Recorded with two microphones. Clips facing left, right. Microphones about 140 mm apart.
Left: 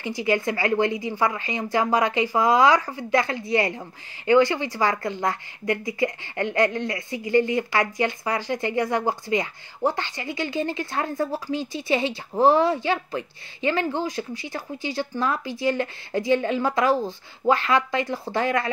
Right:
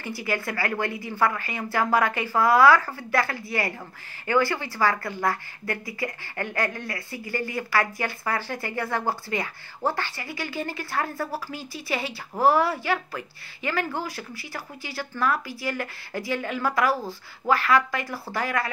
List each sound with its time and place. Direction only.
0.0 s speech: 20° left (ahead or behind)